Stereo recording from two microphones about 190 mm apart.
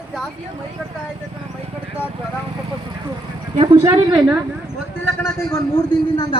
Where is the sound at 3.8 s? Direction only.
15° right (ahead or behind).